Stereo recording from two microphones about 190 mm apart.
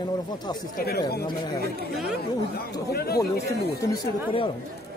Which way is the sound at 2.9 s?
55° left (ahead or behind).